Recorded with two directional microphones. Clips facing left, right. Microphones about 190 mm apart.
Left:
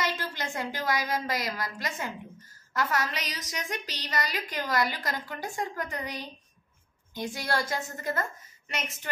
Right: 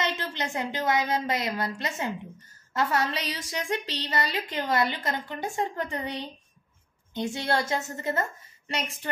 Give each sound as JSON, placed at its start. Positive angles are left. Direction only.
{"t": 0.0, "sound": "a woman's voice", "side_deg": -25}